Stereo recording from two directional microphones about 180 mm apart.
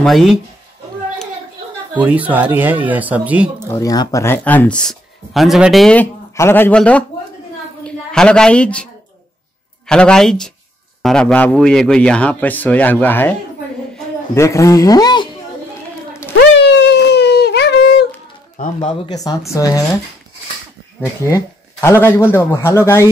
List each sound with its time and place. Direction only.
0.0 s speech: centre (ahead or behind)
2.0 s speech: 10° right (ahead or behind)
3.6 s speech: 15° left (ahead or behind)
6.3 s a woman's voice: 15° left (ahead or behind)
9.8 s speech: 5° left (ahead or behind)
14.3 s speech: 15° left (ahead or behind)
16.3 s a sound: 75° left (ahead or behind)
19.5 s speech: 20° left (ahead or behind)
21.8 s speech: 15° left (ahead or behind)